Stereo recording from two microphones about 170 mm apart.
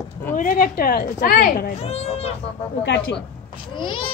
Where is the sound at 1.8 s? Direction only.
35° left (ahead or behind).